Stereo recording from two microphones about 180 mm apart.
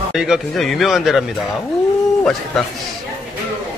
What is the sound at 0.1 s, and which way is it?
A man's voice, 5° right (ahead or behind).